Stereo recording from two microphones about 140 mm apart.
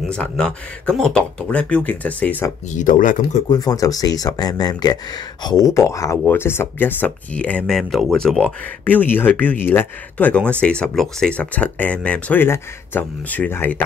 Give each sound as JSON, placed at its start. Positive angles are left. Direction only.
{"t": 0.1, "sound": "speech", "side_deg": 10}
{"t": 2.7, "sound": "speech", "side_deg": 70}
{"t": 3.4, "sound": "speech", "side_deg": 25}